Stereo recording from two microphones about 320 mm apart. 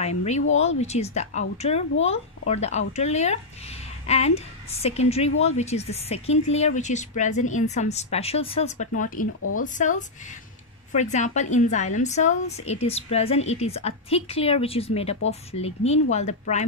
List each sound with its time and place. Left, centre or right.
0.6 s a woman's voice: centre